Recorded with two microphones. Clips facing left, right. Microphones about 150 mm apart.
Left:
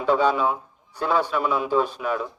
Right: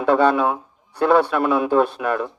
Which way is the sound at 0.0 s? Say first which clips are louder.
Right 4 dB; 60° right (ahead or behind).